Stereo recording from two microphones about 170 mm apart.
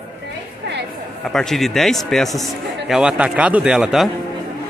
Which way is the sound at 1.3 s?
Centre (ahead or behind).